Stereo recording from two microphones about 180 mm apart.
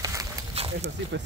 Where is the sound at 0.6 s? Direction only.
35° right (ahead or behind).